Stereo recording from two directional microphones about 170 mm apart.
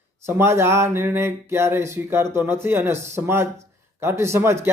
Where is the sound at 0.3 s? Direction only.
15° right (ahead or behind).